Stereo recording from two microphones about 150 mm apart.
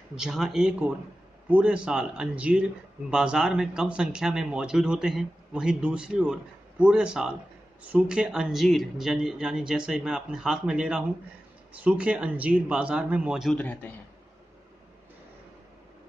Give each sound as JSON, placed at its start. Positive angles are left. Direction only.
{"t": 0.1, "sound": "speech", "side_deg": -5}
{"t": 13.6, "sound": "a man's voice", "side_deg": 10}